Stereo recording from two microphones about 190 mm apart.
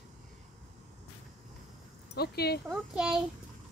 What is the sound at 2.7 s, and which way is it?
Child singing, 5° right (ahead or behind).